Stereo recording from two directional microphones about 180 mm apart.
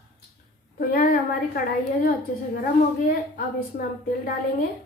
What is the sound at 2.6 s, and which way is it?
Speech, 50° left (ahead or behind).